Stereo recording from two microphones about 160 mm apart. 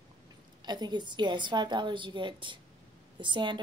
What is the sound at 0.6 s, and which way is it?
A woman's voice, 25° right (ahead or behind).